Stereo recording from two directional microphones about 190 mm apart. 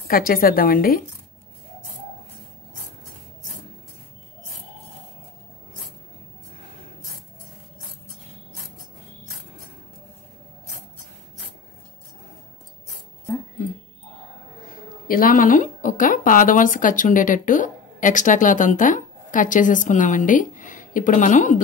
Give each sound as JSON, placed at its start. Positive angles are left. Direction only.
{"t": 0.1, "sound": "a woman's voice", "side_deg": 50}
{"t": 15.0, "sound": "speech", "side_deg": 50}